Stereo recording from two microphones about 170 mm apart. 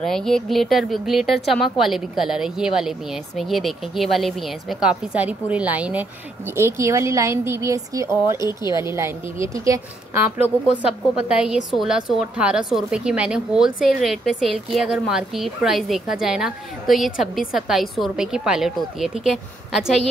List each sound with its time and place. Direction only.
0.0 s speech: centre (ahead or behind); by 10.2 s 20° right (ahead or behind)
10.3 s speech: 5° right (ahead or behind)